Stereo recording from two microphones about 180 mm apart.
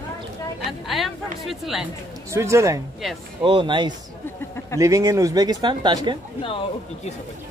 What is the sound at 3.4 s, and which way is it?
Speech, 25° right (ahead or behind).